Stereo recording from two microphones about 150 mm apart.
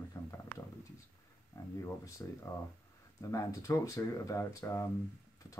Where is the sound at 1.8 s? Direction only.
20° left (ahead or behind).